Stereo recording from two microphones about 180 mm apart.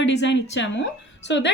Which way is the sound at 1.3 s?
80° left.